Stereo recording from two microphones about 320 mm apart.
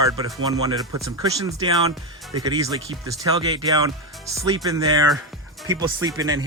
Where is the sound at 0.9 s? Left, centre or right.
Right.